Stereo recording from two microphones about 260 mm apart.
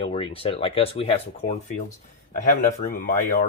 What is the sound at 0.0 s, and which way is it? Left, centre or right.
Speech, left.